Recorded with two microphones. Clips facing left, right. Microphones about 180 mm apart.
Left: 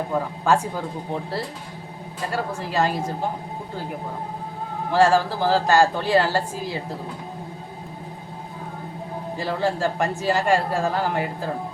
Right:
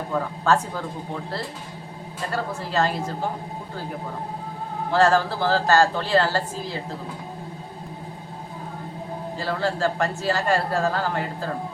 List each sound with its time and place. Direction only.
0.1 s a man's voice: 15° left (ahead or behind)
2.3 s a man's voice: 15° left (ahead or behind)
4.9 s a man's voice: 10° left (ahead or behind)
9.4 s a man's voice: 15° left (ahead or behind)